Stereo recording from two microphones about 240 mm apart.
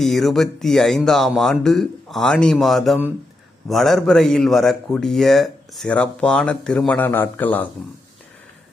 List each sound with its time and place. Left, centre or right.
0.0 s a man's voice: centre